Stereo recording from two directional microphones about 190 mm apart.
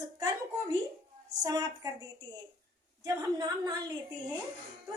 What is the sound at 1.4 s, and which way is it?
A woman's voice, 20° right (ahead or behind).